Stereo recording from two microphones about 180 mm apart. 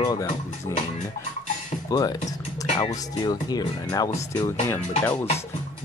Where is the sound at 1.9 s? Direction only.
20° left (ahead or behind).